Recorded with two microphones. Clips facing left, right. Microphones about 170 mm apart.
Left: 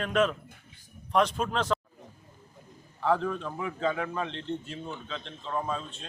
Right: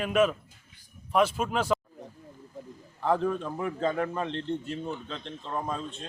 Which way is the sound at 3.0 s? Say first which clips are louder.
Right 1 dB; 15° right (ahead or behind).